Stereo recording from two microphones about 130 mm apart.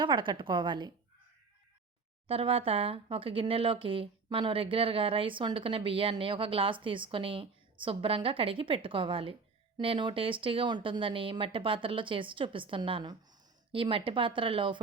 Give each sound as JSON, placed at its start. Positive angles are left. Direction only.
{"t": 0.0, "sound": "speech", "side_deg": -40}
{"t": 2.2, "sound": "speech", "side_deg": -45}